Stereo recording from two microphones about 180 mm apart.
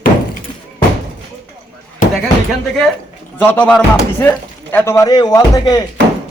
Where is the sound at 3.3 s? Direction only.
10° left (ahead or behind).